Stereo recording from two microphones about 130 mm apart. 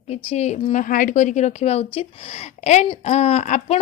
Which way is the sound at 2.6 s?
65° left (ahead or behind).